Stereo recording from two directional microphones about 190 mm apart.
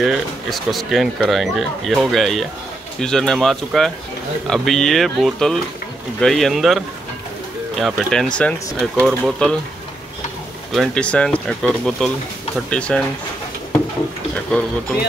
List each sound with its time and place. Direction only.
0.0 s speech: centre (ahead or behind)
7.8 s speech: centre (ahead or behind)
10.7 s speech: 5° left (ahead or behind)
14.5 s speech: 5° left (ahead or behind)